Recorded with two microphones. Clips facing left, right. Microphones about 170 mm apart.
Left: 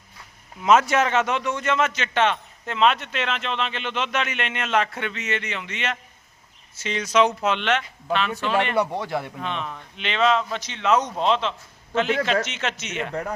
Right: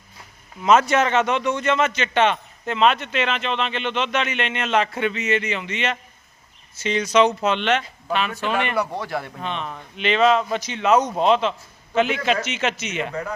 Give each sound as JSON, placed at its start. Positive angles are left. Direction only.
{"t": 0.6, "sound": "a man's voice", "side_deg": 5}
{"t": 8.4, "sound": "a man's voice", "side_deg": -10}
{"t": 8.7, "sound": "speech", "side_deg": 25}
{"t": 9.4, "sound": "a man's voice", "side_deg": 0}